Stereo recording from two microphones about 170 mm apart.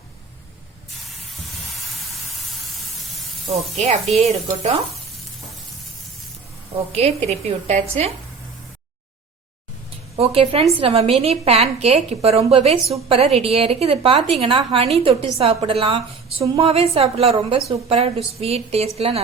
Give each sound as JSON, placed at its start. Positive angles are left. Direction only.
{"t": 3.5, "sound": "a woman's voice", "side_deg": -40}
{"t": 6.7, "sound": "a woman's voice", "side_deg": -40}
{"t": 10.2, "sound": "a woman's voice", "side_deg": -35}